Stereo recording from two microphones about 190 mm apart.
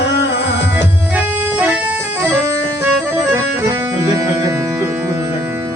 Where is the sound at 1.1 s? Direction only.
5° right (ahead or behind).